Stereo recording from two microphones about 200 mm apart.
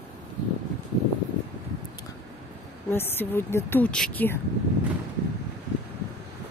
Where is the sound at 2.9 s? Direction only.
10° left (ahead or behind).